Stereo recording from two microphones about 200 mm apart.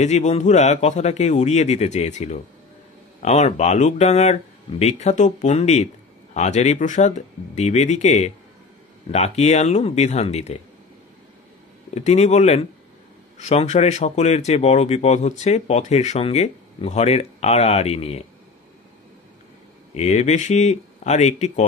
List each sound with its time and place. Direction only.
0.0 s speech: 35° left (ahead or behind)
11.9 s speech: 35° left (ahead or behind)
19.9 s speech: 35° left (ahead or behind)